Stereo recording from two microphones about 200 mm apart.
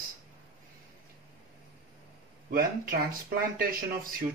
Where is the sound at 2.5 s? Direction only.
45° right (ahead or behind).